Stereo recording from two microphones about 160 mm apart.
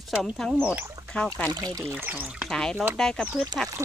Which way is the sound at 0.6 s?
10° right (ahead or behind).